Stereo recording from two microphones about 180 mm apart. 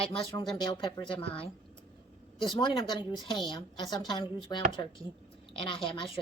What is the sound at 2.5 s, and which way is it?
Speech, 25° left (ahead or behind).